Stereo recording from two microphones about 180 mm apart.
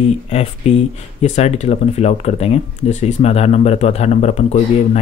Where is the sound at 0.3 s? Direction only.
35° left (ahead or behind).